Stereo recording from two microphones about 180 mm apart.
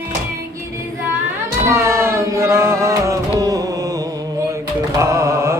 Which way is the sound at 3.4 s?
20° right (ahead or behind).